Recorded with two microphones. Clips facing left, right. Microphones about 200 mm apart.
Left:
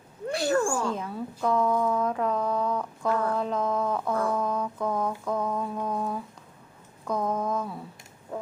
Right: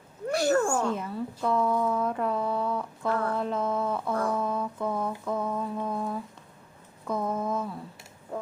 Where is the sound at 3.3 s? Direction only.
Centre (ahead or behind).